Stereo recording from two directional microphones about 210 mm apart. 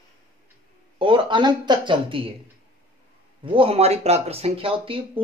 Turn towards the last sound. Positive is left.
turn(degrees=-25)  # may be behind; listen again after turning